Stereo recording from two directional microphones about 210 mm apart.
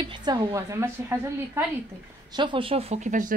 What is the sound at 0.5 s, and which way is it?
A woman's voice, 10° right (ahead or behind).